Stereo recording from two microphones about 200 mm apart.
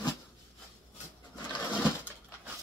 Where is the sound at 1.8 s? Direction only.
10° right (ahead or behind).